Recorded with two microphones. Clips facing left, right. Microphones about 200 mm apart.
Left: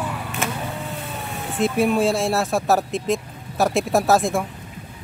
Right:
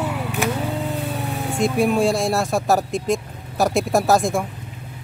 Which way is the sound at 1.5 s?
Centre (ahead or behind).